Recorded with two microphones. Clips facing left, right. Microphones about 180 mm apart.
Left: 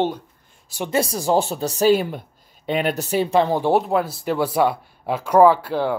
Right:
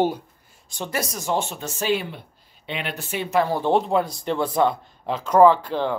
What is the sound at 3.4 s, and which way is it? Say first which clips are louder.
Speech: left 2 dB; 15° left (ahead or behind).